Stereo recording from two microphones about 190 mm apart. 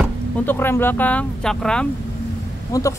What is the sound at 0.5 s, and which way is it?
Speech, 10° left (ahead or behind).